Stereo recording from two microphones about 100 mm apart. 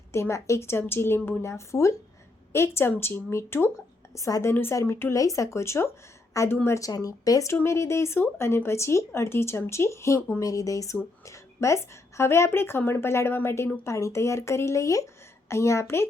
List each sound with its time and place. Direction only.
0.1 s a woman's voice: 30° left (ahead or behind)